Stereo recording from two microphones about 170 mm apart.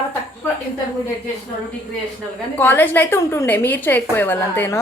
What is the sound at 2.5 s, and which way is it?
A woman's voice, 10° left (ahead or behind).